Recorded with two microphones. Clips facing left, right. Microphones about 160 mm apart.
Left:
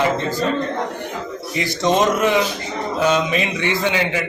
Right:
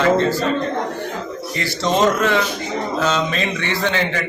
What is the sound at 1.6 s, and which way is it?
A man's voice, 20° left (ahead or behind).